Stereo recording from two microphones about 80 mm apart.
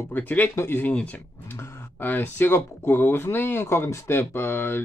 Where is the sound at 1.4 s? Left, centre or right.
Left.